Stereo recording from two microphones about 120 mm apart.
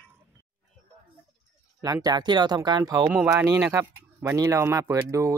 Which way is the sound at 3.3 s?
25° right (ahead or behind).